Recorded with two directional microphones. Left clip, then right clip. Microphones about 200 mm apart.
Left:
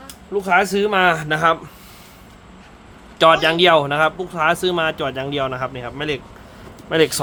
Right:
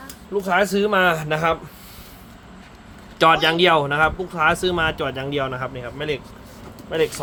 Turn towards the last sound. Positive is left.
turn(degrees=35)  # may be behind; listen again after turning